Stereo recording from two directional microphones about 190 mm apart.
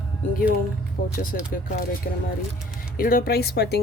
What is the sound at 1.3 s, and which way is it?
Speech, 55° left (ahead or behind).